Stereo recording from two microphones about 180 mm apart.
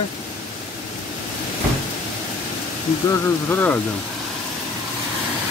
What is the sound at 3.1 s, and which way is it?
Speech, 10° left (ahead or behind).